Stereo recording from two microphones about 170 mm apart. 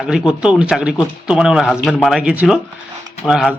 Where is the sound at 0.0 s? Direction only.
5° right (ahead or behind).